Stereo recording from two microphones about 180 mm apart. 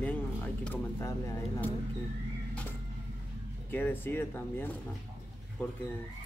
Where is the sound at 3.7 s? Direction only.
10° left (ahead or behind).